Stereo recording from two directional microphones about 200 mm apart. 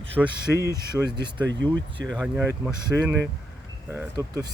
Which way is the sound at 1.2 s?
20° right (ahead or behind).